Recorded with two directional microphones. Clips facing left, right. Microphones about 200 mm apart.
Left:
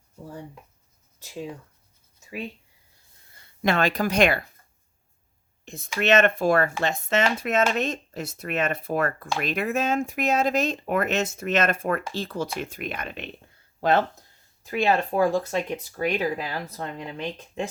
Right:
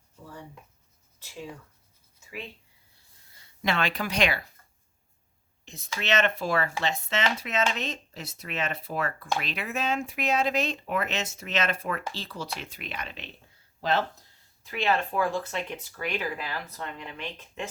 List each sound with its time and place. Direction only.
3.6 s speech: 45° left (ahead or behind)
5.6 s speech: 50° left (ahead or behind)
14.6 s speech: 45° left (ahead or behind)